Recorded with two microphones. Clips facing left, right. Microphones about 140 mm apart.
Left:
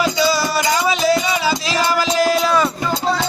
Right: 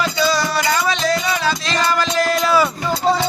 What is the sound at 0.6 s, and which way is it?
Music, 20° left (ahead or behind).